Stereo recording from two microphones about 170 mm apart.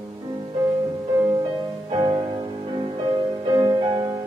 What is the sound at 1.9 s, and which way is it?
Music, 25° right (ahead or behind).